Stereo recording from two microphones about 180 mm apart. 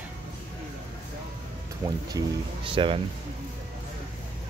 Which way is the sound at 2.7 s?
30° right (ahead or behind).